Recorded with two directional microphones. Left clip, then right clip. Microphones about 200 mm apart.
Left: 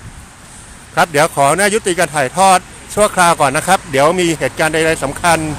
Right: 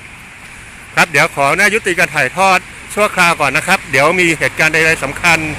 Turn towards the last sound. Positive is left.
turn(degrees=10)  # may be behind; listen again after turning